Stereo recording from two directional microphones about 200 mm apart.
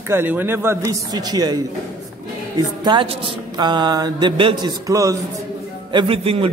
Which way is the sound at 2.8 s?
25° right (ahead or behind).